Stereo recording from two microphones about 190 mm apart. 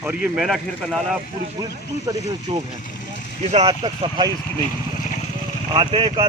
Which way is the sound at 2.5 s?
25° right (ahead or behind).